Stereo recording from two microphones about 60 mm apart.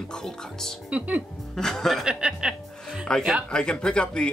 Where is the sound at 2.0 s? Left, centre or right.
Centre.